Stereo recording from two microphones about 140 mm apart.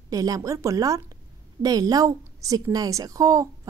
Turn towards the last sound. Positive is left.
turn(degrees=-25)  # may be behind; listen again after turning